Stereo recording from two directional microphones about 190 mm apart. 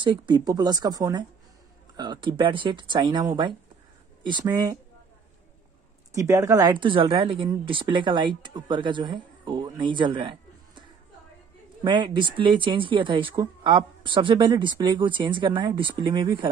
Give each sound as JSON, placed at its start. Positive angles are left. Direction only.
{"t": 0.0, "sound": "speech", "side_deg": -25}
{"t": 6.1, "sound": "speech", "side_deg": -15}
{"t": 11.8, "sound": "speech", "side_deg": -25}